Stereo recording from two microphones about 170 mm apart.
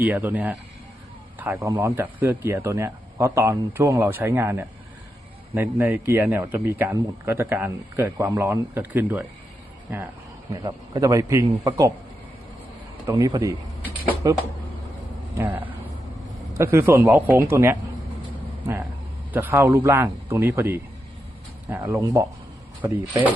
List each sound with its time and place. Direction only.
0.0 s a man's voice: 15° right (ahead or behind)
13.1 s a man's voice: 20° right (ahead or behind)
19.3 s speech: 10° right (ahead or behind)